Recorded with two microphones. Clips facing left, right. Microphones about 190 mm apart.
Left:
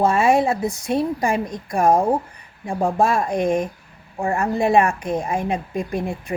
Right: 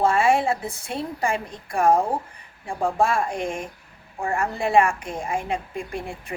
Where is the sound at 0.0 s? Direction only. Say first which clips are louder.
Left 3 dB; 20° left (ahead or behind).